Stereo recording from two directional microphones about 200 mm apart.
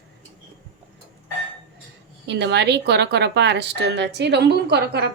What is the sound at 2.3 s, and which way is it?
A woman's voice, 60° right (ahead or behind).